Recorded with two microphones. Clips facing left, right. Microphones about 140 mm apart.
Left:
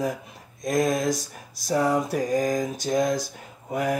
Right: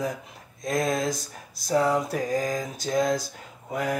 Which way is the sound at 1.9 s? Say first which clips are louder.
Left 2 dB; 20° left (ahead or behind).